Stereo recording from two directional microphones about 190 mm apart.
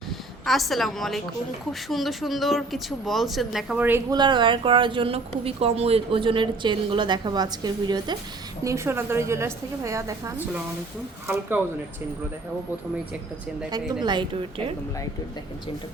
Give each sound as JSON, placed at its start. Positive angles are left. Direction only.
{"t": 0.4, "sound": "a woman's voice", "side_deg": 0}
{"t": 4.1, "sound": "a woman's voice", "side_deg": -25}
{"t": 14.0, "sound": "speech", "side_deg": -25}